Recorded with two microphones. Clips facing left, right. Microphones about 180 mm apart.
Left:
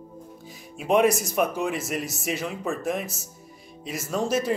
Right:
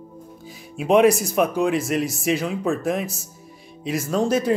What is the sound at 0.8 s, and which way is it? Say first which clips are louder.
Speech: right 5 dB; centre (ahead or behind).